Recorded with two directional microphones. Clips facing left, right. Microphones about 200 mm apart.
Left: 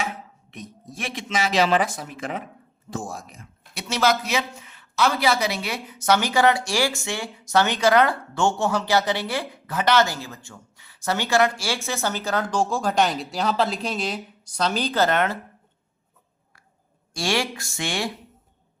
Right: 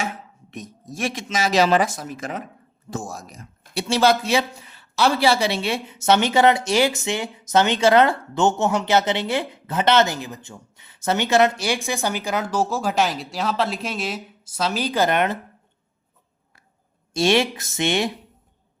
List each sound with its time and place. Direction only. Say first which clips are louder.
0.5 s speech: right 3 dB; 45° right (ahead or behind); by 15.4 s 15° right (ahead or behind)
17.2 s speech: right 6 dB; 20° right (ahead or behind)